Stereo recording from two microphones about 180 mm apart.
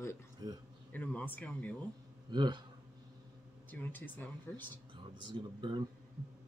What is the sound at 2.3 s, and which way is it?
Speech, 25° right (ahead or behind).